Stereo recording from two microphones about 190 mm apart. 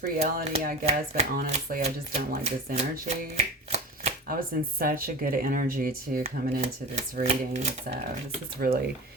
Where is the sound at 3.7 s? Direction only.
35° right (ahead or behind).